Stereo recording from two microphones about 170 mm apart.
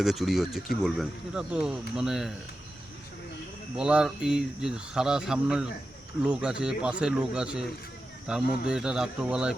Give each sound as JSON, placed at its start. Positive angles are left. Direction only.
{"t": 0.0, "sound": "speech", "side_deg": 0}
{"t": 3.8, "sound": "speech", "side_deg": -5}